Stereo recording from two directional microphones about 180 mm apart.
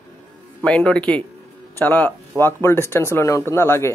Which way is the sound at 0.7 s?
5° left (ahead or behind).